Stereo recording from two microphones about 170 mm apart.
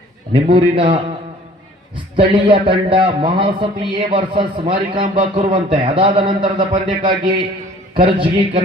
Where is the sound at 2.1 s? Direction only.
30° right (ahead or behind).